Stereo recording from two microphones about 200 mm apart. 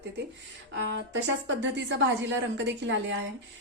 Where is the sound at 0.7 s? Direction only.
65° right (ahead or behind).